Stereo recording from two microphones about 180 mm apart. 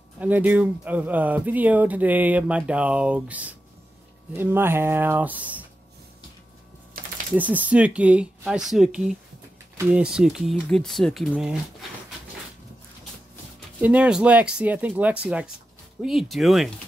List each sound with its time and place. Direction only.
0.2 s speech: 10° right (ahead or behind)
7.0 s typing: 55° right (ahead or behind)
7.3 s speech: 10° right (ahead or behind)
13.7 s speech: 10° right (ahead or behind)